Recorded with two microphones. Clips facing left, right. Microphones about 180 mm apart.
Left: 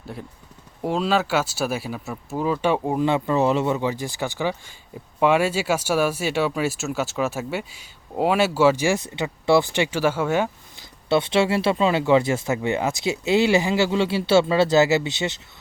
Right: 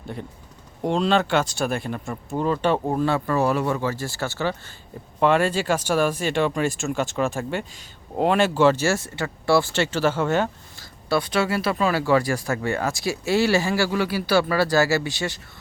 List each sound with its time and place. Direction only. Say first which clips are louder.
0.8 s speech: right 1 dB; 5° left (ahead or behind)
11.1 s speech: left 3 dB; 25° left (ahead or behind)